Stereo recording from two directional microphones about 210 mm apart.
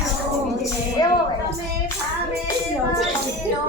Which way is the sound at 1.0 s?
20° left (ahead or behind).